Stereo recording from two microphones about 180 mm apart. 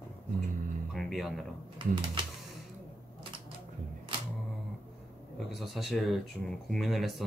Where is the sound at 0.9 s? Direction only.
Centre (ahead or behind).